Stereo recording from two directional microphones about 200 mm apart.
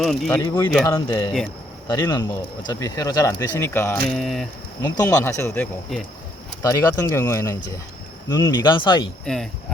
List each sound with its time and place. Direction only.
0.0 s speech: centre (ahead or behind)
0.3 s speech: 15° left (ahead or behind)
4.8 s speech: 15° left (ahead or behind)
9.2 s speech: centre (ahead or behind)